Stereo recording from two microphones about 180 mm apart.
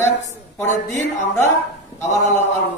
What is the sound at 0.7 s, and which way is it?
Speech, 15° left (ahead or behind).